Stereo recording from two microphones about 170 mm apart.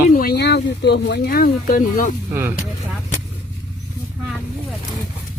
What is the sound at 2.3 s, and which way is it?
Speech, 15° right (ahead or behind).